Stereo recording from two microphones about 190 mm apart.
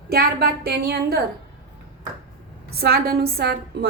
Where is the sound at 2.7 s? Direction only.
55° right (ahead or behind).